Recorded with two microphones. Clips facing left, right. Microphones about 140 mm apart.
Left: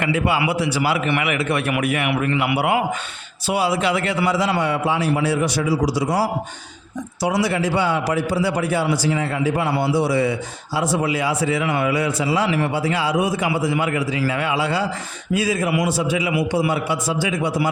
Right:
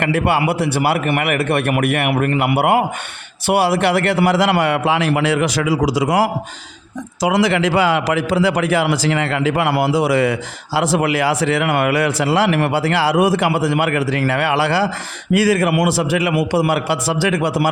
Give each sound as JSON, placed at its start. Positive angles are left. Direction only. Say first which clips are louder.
{"t": 0.0, "sound": "a man's voice", "louder": "right 3 dB", "side_deg": -60}
{"t": 3.4, "sound": "a man's voice", "louder": "right 5 dB", "side_deg": -70}
{"t": 7.4, "sound": "a man's voice", "louder": "right 5 dB", "side_deg": -90}